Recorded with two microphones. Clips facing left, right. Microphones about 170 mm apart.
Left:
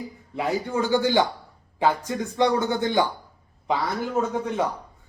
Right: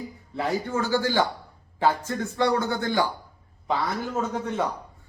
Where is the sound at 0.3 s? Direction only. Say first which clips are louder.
Left 1 dB; 15° left (ahead or behind).